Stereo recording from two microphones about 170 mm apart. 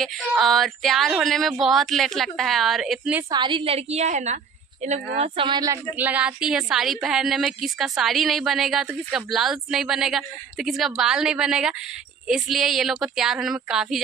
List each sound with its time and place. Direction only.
0.4 s speech: centre (ahead or behind)
3.3 s a woman's voice: 25° right (ahead or behind)
5.9 s speech: 10° right (ahead or behind)